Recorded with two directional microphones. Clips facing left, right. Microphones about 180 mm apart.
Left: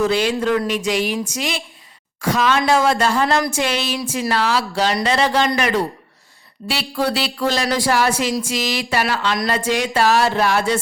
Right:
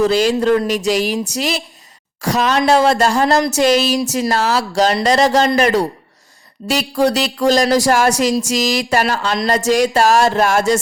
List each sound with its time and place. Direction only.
0.0 s music: 40° right (ahead or behind)
2.2 s speech: 40° right (ahead or behind)
2.6 s music: 40° right (ahead or behind)
6.7 s speech: 45° right (ahead or behind)
8.4 s music: 40° right (ahead or behind)